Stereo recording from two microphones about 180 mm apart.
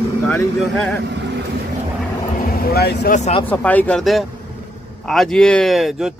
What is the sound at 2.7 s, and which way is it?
Speech, 60° left (ahead or behind).